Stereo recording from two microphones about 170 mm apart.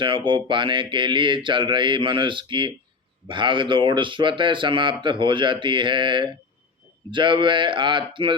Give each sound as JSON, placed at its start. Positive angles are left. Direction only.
{"t": 0.0, "sound": "speech", "side_deg": -30}